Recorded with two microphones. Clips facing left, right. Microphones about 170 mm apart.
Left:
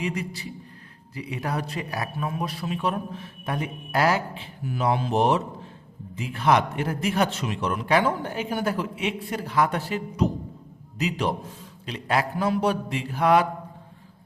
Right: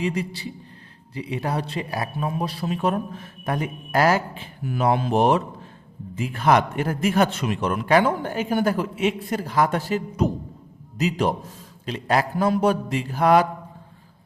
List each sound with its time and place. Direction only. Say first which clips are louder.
0.0 s a man's voice: right 4 dB; 30° right (ahead or behind)